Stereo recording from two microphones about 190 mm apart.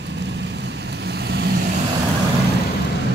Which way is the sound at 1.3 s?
60° right (ahead or behind).